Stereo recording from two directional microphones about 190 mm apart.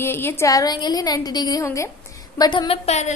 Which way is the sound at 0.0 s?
10° left (ahead or behind).